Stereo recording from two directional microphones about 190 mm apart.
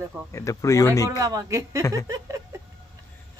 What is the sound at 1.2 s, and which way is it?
Speech, 15° right (ahead or behind).